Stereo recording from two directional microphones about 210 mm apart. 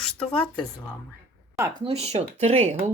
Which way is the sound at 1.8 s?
30° right (ahead or behind).